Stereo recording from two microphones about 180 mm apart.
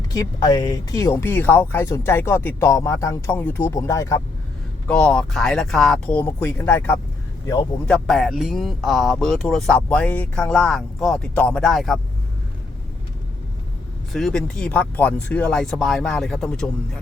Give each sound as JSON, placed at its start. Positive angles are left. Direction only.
{"t": 0.1, "sound": "speech", "side_deg": 20}
{"t": 4.9, "sound": "speech", "side_deg": 5}
{"t": 14.1, "sound": "speech", "side_deg": 0}